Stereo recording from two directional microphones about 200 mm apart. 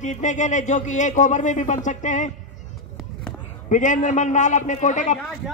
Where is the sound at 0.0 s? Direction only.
35° left (ahead or behind).